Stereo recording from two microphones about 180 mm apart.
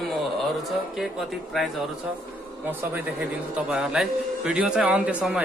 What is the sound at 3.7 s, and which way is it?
A man's voice, 5° right (ahead or behind).